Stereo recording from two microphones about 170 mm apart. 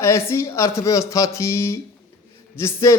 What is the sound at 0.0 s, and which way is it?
A man's voice, 15° left (ahead or behind).